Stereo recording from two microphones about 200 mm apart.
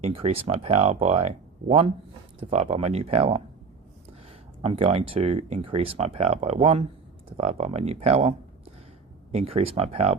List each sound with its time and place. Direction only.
0.0 s speech: 30° right (ahead or behind)
4.6 s speech: 30° right (ahead or behind)
9.3 s speech: 30° right (ahead or behind)